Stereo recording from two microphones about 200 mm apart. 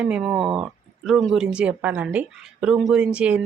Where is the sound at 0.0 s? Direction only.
5° right (ahead or behind).